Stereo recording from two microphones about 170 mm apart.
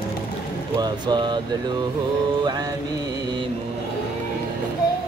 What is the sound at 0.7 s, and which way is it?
Speech, 25° right (ahead or behind).